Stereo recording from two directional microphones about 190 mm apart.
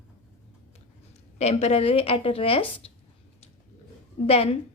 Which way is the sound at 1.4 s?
35° left (ahead or behind).